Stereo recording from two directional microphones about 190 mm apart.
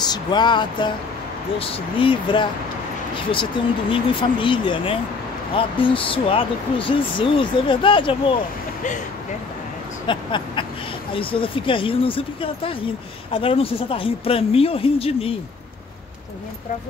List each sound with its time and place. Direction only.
0.0 s speech: 20° left (ahead or behind)
3.9 s speech: 25° left (ahead or behind)
10.0 s speech: 25° left (ahead or behind)